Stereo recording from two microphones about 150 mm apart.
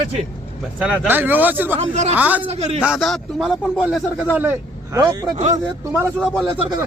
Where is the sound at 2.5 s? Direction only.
45° right (ahead or behind).